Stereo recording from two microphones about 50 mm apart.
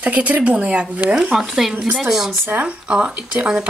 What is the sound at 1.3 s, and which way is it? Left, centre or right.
Speech, centre.